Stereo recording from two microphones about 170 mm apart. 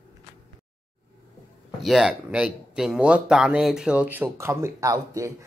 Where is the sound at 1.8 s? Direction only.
Centre (ahead or behind).